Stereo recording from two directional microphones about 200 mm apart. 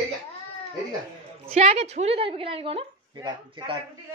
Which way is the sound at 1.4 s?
30° right (ahead or behind).